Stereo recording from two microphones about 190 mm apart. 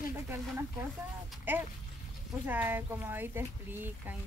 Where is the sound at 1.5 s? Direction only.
10° right (ahead or behind).